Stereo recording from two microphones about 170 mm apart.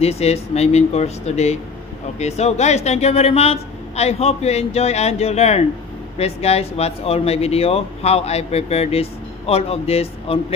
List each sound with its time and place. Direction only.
0.0 s speech: 40° left (ahead or behind)